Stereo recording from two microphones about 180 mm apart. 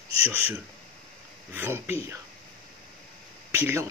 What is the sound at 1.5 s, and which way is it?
Speech, 10° right (ahead or behind).